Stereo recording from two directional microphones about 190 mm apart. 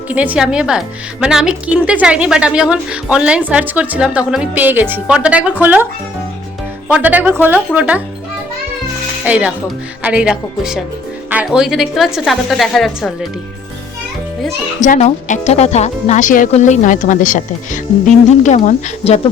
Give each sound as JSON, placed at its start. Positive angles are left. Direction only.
{"t": 0.1, "sound": "a woman's voice", "side_deg": -5}
{"t": 9.2, "sound": "a woman's voice", "side_deg": -5}
{"t": 14.8, "sound": "speech", "side_deg": 40}